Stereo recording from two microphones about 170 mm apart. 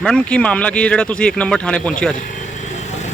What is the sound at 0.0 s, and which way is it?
Speech, 5° left (ahead or behind).